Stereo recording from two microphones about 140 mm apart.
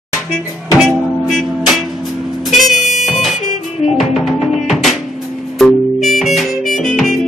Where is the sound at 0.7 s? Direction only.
Centre (ahead or behind).